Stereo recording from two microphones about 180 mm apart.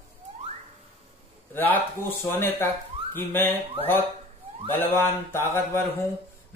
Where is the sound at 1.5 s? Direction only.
10° left (ahead or behind).